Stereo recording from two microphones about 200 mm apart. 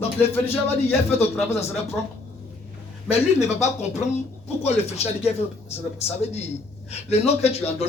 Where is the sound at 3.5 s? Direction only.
35° left (ahead or behind).